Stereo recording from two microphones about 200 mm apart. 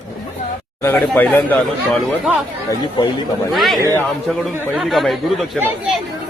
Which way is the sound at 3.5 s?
Centre (ahead or behind).